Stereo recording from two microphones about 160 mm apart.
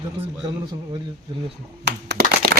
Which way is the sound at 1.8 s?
90° right.